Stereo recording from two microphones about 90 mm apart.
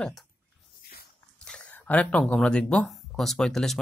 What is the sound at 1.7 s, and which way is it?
Speech, 20° left (ahead or behind).